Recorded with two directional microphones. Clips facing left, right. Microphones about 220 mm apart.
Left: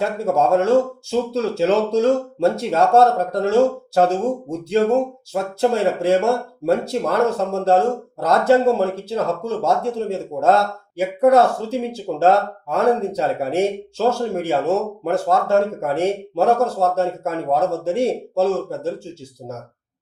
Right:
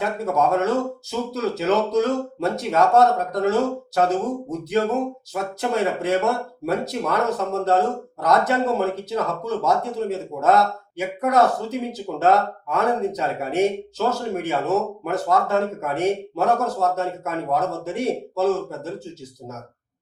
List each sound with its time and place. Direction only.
0.0 s speech: 30° left (ahead or behind)